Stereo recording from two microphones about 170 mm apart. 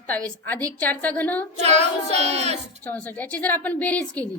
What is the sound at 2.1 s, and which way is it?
Speech, 40° right (ahead or behind).